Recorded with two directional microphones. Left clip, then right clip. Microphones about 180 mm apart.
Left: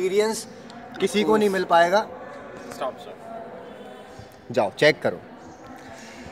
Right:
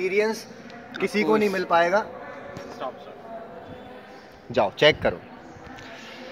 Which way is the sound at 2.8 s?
25° left (ahead or behind).